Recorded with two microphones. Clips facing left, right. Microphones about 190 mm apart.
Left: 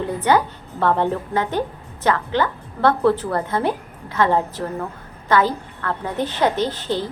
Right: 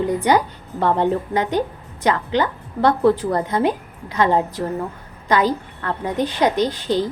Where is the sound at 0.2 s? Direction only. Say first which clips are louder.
Even; 15° right (ahead or behind).